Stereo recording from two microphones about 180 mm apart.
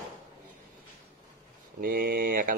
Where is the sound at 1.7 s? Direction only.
50° right (ahead or behind).